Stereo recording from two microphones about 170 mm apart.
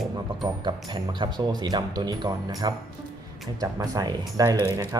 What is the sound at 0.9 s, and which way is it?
Speech, 25° right (ahead or behind).